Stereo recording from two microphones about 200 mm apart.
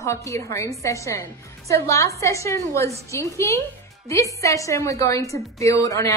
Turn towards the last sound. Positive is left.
turn(degrees=15)  # may be behind; listen again after turning